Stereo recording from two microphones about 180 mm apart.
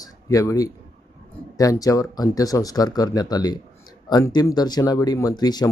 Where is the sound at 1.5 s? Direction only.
20° left (ahead or behind).